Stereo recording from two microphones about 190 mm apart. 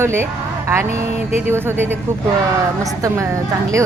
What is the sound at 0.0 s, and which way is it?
Speech, 15° right (ahead or behind).